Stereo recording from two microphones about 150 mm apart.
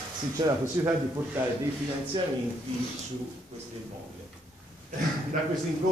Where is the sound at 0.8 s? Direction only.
20° right (ahead or behind).